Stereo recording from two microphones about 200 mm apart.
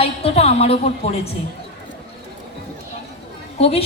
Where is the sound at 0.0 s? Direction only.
30° left (ahead or behind).